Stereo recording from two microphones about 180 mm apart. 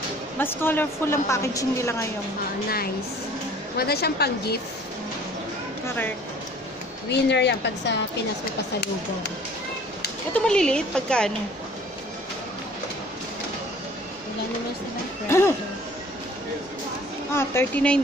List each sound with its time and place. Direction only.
0.4 s a woman's voice: 10° left (ahead or behind)
3.7 s a woman's voice: 60° left (ahead or behind)
7.1 s a woman's voice: 70° left (ahead or behind)
10.3 s a woman's voice: 5° left (ahead or behind)
15.2 s a woman's voice: 15° left (ahead or behind)
17.3 s a woman's voice: 15° left (ahead or behind)